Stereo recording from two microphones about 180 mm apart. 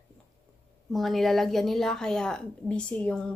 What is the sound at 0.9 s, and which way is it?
Speech, centre (ahead or behind).